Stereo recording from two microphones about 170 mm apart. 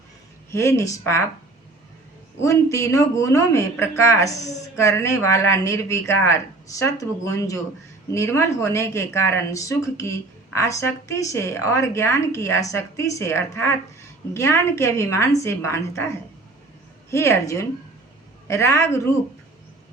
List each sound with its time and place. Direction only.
0.5 s speech: 15° left (ahead or behind)
2.4 s speech: 20° left (ahead or behind)
17.1 s speech: 15° left (ahead or behind)